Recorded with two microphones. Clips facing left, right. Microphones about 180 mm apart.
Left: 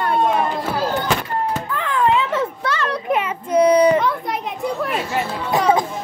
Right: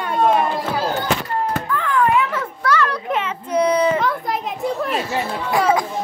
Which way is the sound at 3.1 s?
10° left (ahead or behind).